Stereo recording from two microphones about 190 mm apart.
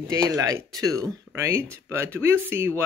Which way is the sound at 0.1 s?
20° right (ahead or behind).